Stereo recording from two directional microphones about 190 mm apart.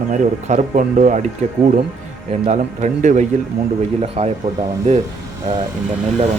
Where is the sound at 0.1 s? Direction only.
40° right (ahead or behind).